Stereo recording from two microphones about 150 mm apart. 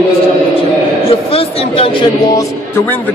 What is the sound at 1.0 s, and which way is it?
A man's voice, 40° left (ahead or behind).